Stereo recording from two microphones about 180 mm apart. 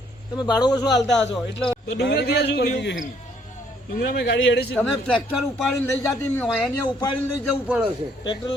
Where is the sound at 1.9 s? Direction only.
70° left (ahead or behind).